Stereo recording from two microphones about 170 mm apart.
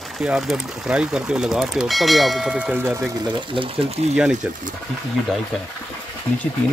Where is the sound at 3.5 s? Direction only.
30° right (ahead or behind).